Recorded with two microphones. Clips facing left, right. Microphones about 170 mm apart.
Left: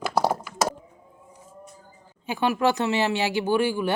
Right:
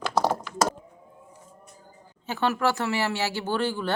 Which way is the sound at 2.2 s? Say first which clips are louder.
Left 2 dB; 15° left (ahead or behind).